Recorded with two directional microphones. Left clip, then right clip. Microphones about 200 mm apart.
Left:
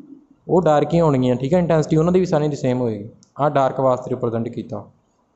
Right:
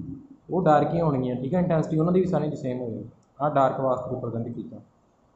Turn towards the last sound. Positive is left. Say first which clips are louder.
# left 8 dB
turn(degrees=45)  # may be behind; listen again after turning